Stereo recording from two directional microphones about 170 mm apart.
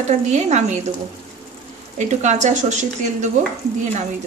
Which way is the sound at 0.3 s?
40° right (ahead or behind).